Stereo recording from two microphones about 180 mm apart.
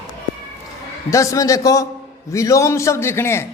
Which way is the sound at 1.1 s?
15° left (ahead or behind).